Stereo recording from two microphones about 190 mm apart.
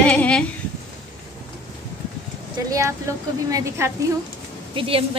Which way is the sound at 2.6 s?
15° right (ahead or behind).